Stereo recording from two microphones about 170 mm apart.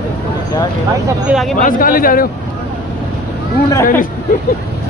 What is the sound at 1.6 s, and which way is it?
Speech, 55° left (ahead or behind).